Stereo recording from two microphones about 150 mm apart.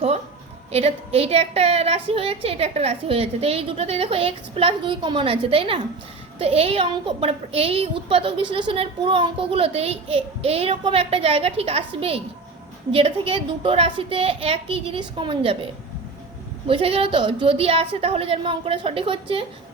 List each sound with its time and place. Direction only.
0.7 s a woman's voice: 45° right (ahead or behind)